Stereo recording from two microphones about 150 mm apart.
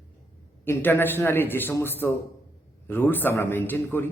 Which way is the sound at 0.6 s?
15° left (ahead or behind).